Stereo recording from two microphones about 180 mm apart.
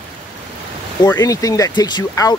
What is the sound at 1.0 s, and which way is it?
Speech, 20° left (ahead or behind).